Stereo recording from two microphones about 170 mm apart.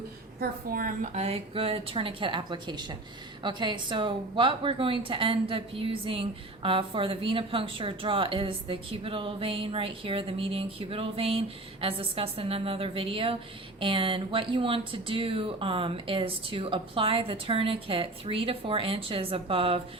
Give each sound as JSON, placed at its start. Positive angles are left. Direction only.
{"t": 0.3, "sound": "a woman's voice", "side_deg": -55}